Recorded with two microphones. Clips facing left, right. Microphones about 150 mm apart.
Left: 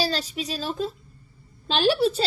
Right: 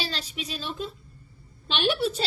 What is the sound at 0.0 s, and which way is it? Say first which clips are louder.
A woman's voice: left 7 dB; 40° left (ahead or behind).